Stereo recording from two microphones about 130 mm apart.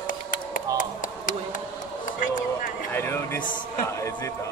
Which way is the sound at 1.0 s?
90° left.